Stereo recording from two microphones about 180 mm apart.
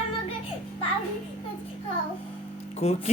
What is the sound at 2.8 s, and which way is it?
Speech, 35° left (ahead or behind).